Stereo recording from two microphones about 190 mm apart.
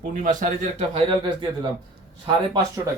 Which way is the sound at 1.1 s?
25° right (ahead or behind).